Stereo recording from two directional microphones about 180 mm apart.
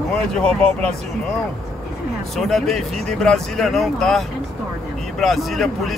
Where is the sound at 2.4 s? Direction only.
Centre (ahead or behind).